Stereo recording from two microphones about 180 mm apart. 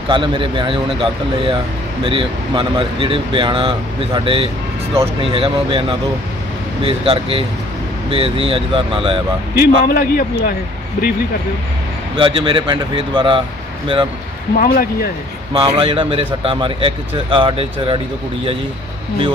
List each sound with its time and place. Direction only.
0.1 s a man's voice: 30° right (ahead or behind)
9.6 s a man's voice: 60° left (ahead or behind)
12.1 s speech: 25° right (ahead or behind)
14.6 s a man's voice: 55° left (ahead or behind)
15.5 s speech: 30° right (ahead or behind)